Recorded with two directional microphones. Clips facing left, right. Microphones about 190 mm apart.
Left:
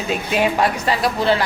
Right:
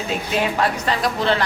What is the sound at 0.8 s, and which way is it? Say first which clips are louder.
Speech: left 2 dB; 10° left (ahead or behind).